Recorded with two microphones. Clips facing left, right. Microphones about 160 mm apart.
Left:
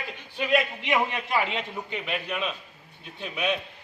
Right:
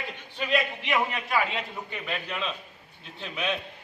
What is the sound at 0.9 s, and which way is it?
A man's voice, 25° left (ahead or behind).